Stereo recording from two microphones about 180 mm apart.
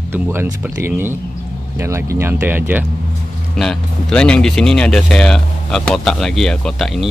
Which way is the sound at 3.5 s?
5° left (ahead or behind).